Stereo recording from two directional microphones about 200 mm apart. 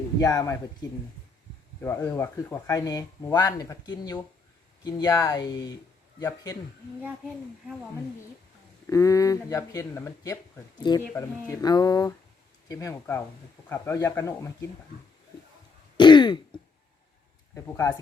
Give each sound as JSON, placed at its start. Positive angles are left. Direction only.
{"t": 0.2, "sound": "speech", "side_deg": 20}
{"t": 8.9, "sound": "speech", "side_deg": 15}
{"t": 16.0, "sound": "throat clearing", "side_deg": 20}
{"t": 17.5, "sound": "speech", "side_deg": 15}